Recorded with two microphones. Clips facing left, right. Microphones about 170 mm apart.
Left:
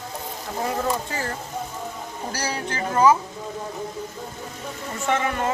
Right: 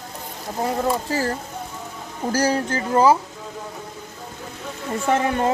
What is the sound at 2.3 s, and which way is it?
Speech, 45° right (ahead or behind).